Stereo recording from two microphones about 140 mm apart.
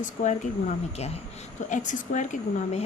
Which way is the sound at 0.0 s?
60° left (ahead or behind).